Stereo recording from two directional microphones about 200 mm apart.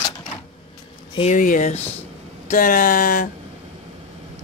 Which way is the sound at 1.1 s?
35° left (ahead or behind).